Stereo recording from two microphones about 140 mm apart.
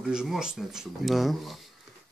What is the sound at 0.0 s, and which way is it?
Speech, 5° right (ahead or behind).